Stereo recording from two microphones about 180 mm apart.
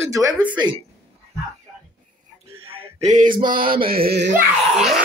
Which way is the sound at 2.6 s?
45° right (ahead or behind).